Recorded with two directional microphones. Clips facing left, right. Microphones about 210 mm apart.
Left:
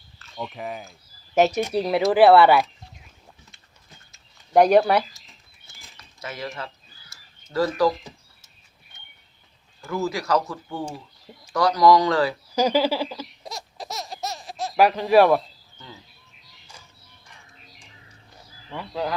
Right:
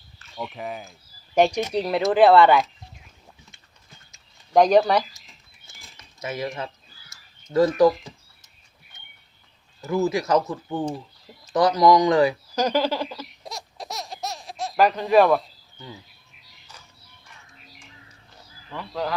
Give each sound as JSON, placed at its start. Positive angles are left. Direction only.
{"t": 0.3, "sound": "speech", "side_deg": 0}
{"t": 4.5, "sound": "speech", "side_deg": 10}
{"t": 5.6, "sound": "cutlery", "side_deg": -20}
{"t": 7.5, "sound": "speech", "side_deg": -20}
{"t": 9.8, "sound": "speech", "side_deg": -20}
{"t": 12.5, "sound": "speech", "side_deg": 10}
{"t": 13.4, "sound": "a sound", "side_deg": 0}
{"t": 14.8, "sound": "speech", "side_deg": 10}
{"t": 18.7, "sound": "speech", "side_deg": 10}